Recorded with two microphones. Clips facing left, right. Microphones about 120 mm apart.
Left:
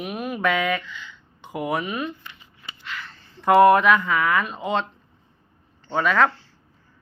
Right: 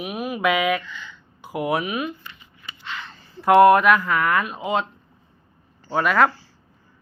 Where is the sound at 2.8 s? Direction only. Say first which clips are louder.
Right 2 dB; 20° right (ahead or behind).